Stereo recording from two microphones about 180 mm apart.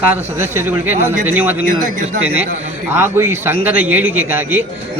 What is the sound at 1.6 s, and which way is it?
Speech, 45° right (ahead or behind).